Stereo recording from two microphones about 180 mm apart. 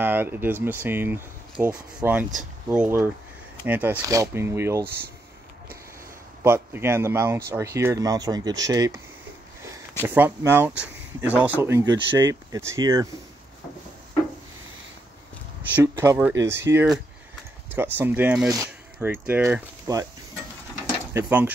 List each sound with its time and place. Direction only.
0.0 s speech: 10° right (ahead or behind)
6.4 s speech: 15° right (ahead or behind)
10.0 s speech: 10° right (ahead or behind)
15.7 s speech: 15° right (ahead or behind)
21.1 s speech: 10° right (ahead or behind)